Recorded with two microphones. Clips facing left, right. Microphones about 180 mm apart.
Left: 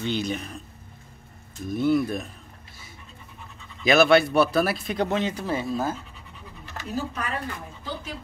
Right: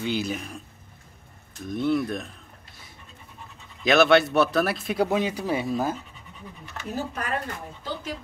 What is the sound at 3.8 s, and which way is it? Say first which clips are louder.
Speech: even; centre (ahead or behind).